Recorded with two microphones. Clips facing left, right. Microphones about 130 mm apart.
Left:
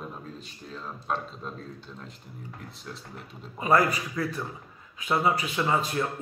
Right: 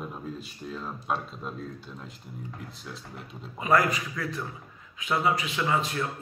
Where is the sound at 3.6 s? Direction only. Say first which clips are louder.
Left 1 dB; 35° left (ahead or behind).